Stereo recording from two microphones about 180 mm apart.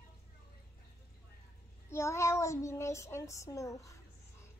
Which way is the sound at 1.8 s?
15° left (ahead or behind).